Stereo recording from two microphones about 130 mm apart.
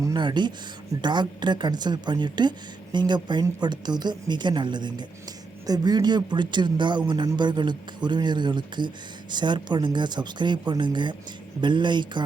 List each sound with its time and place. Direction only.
0.0 s a woman's voice: 35° right (ahead or behind)